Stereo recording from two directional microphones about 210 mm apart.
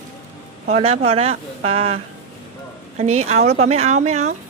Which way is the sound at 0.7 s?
30° right (ahead or behind).